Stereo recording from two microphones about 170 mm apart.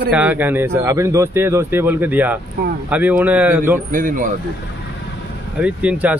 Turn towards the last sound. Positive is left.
turn(degrees=-10)  # may be behind; listen again after turning